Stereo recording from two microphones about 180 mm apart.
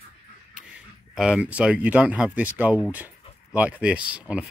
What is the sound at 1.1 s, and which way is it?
Speech, 5° right (ahead or behind).